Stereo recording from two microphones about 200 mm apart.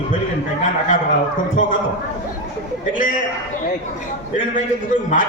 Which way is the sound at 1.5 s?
40° left (ahead or behind).